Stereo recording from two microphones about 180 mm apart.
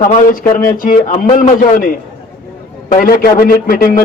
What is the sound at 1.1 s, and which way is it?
Speech, 35° left (ahead or behind).